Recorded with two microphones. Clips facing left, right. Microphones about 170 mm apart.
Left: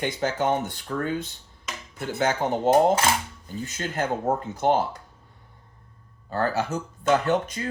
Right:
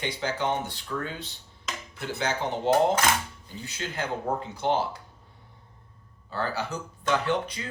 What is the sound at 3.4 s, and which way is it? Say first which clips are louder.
Speech: left 5 dB; 45° left (ahead or behind).